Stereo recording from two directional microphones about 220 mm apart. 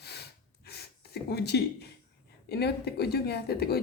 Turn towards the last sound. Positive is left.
turn(degrees=45)  # may be behind; listen again after turning